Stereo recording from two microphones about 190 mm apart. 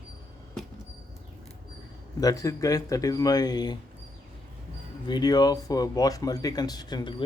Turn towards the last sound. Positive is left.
turn(degrees=25)  # may be behind; listen again after turning